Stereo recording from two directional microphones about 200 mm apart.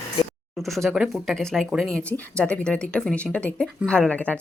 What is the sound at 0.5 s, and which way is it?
Speech, centre (ahead or behind).